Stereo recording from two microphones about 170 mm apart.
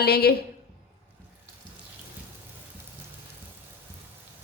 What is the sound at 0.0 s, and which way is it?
Speech, 65° left (ahead or behind).